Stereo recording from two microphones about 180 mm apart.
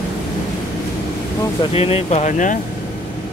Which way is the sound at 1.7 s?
35° left (ahead or behind).